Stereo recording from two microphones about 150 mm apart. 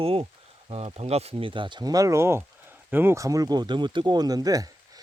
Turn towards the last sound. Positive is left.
turn(degrees=-25)  # may be behind; listen again after turning